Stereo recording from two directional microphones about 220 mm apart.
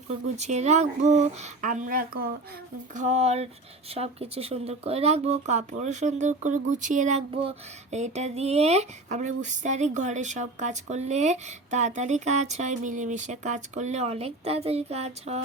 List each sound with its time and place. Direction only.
0.3 s speech: 30° right (ahead or behind)
2.9 s a sound: 30° right (ahead or behind)
3.9 s speech: 25° right (ahead or behind)